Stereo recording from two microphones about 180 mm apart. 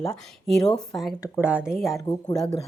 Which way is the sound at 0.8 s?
Centre (ahead or behind).